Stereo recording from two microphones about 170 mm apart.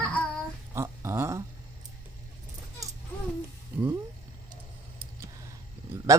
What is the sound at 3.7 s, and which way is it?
Music, 10° right (ahead or behind).